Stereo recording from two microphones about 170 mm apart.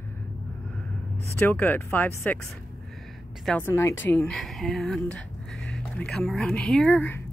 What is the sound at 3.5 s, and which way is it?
Speech, 10° left (ahead or behind).